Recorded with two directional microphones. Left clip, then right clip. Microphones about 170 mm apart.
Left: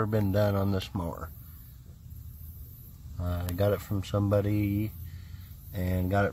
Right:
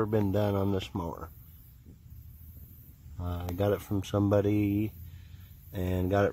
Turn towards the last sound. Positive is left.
turn(degrees=-30)  # may be behind; listen again after turning